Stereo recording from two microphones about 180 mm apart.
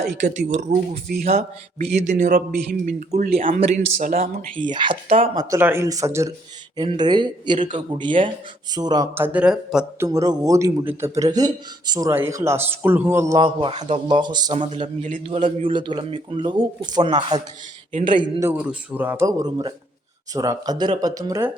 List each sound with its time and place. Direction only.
0.3 s a man's voice: 45° right (ahead or behind)
4.7 s a man's voice: 25° right (ahead or behind)
9.1 s a man's voice: 10° right (ahead or behind)
10.1 s a man's voice: 20° right (ahead or behind)
15.0 s a man's voice: 45° right (ahead or behind)
15.6 s speech: 25° right (ahead or behind)
18.4 s a man's voice: 5° right (ahead or behind)